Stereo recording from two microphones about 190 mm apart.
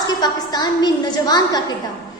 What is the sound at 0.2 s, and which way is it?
A woman's voice, 20° left (ahead or behind).